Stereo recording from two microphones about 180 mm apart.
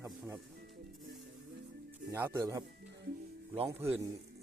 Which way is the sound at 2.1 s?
10° right (ahead or behind).